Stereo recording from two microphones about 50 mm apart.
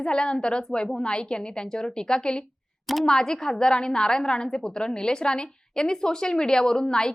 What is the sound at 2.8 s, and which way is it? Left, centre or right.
Speech, centre.